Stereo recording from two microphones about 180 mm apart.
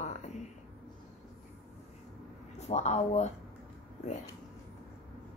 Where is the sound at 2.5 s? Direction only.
40° left (ahead or behind).